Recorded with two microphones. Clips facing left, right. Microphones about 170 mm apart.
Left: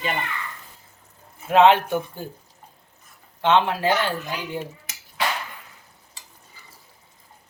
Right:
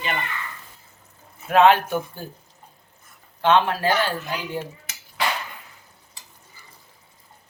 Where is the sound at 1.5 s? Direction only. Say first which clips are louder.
Even; 25° left (ahead or behind).